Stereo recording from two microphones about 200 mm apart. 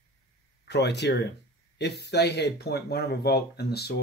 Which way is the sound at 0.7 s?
60° left (ahead or behind).